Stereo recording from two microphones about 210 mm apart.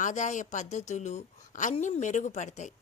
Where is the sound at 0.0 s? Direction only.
35° left (ahead or behind).